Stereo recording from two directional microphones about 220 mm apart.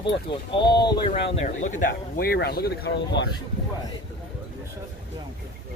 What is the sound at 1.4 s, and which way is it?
Speech, 35° left (ahead or behind).